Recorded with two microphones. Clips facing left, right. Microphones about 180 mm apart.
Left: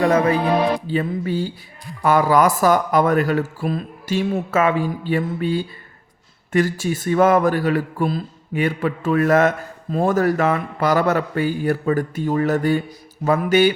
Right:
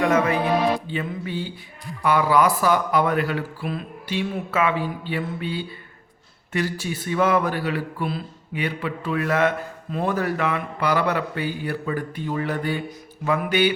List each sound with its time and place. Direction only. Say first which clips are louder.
0.0 s music: left 3 dB; 35° left (ahead or behind)
2.0 s a man's voice: left 3 dB; 45° left (ahead or behind)
13.2 s music: left 5 dB; 40° left (ahead or behind)